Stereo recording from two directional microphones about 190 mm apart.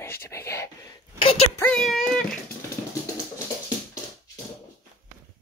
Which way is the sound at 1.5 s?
5° left (ahead or behind).